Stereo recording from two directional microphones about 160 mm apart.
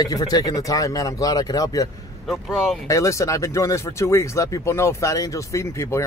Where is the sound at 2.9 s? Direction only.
20° left (ahead or behind).